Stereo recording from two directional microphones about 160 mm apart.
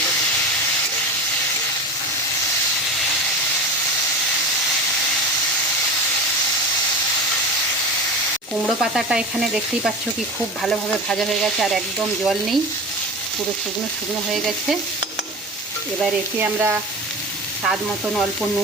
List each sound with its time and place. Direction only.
8.6 s speech: centre (ahead or behind)
14.3 s speech: centre (ahead or behind)
16.4 s speech: 15° right (ahead or behind)
17.7 s speech: centre (ahead or behind)